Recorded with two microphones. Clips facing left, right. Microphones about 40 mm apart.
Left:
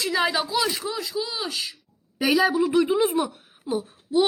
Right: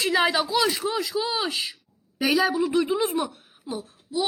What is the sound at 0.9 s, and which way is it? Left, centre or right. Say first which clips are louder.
Speech: right 3 dB; right.